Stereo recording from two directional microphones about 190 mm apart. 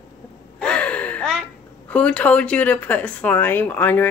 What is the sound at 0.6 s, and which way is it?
Gasp, 5° left (ahead or behind).